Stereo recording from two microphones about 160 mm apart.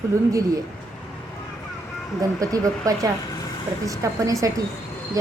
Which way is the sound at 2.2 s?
20° right (ahead or behind).